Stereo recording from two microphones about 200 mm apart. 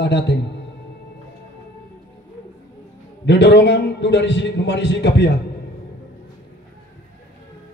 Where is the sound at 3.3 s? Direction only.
60° left (ahead or behind).